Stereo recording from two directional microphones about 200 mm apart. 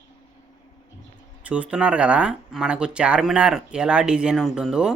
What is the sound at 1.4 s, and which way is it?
Speech, 5° right (ahead or behind).